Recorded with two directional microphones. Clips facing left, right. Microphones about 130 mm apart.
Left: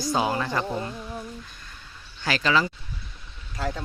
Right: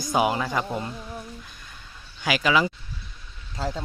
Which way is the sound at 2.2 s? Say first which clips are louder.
Right 1 dB; 10° right (ahead or behind).